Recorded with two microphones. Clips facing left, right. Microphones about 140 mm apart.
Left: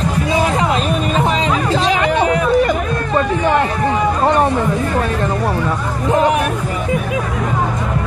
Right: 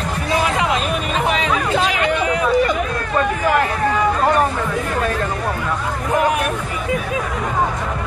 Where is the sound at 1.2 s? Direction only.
35° left (ahead or behind).